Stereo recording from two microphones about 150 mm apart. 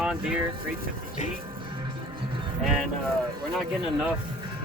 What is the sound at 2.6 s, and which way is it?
Speech, 5° right (ahead or behind).